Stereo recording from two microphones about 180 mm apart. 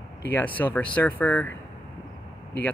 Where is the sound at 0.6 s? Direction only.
10° left (ahead or behind).